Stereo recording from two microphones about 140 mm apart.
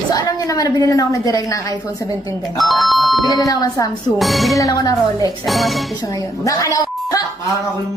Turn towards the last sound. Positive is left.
turn(degrees=25)  # may be behind; listen again after turning